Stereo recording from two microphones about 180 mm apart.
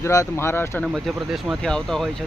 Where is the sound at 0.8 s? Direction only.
Centre (ahead or behind).